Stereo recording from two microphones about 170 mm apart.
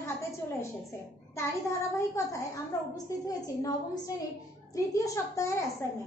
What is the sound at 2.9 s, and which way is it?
A woman's voice, 20° left (ahead or behind).